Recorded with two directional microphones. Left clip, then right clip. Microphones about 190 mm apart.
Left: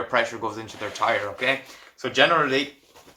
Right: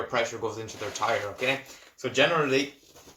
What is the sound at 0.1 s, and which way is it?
Speech, centre (ahead or behind).